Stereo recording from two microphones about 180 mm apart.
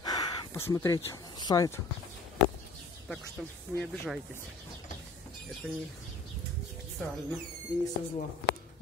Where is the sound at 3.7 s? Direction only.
5° left (ahead or behind).